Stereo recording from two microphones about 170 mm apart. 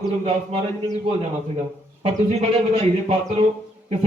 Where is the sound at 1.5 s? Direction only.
35° right (ahead or behind).